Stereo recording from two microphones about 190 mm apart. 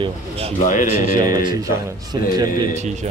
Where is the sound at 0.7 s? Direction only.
45° left (ahead or behind).